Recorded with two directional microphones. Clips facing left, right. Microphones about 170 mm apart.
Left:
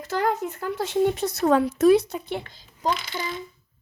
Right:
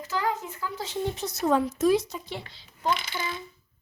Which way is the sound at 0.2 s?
55° left (ahead or behind).